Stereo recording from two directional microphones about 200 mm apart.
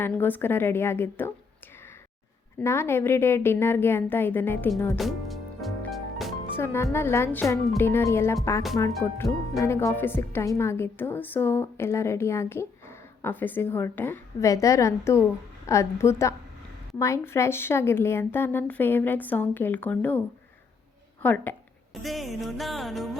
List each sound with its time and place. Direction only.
0.0 s speech: 10° left (ahead or behind)
2.6 s speech: 10° left (ahead or behind)
4.9 s music: centre (ahead or behind)
6.6 s speech: 10° left (ahead or behind)
22.0 s music: centre (ahead or behind)